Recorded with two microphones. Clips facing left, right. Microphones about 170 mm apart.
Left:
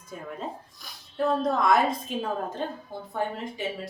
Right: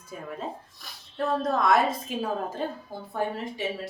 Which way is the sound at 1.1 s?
Centre (ahead or behind).